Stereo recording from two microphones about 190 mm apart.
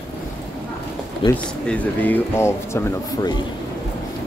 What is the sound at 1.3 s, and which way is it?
Speech, 5° left (ahead or behind).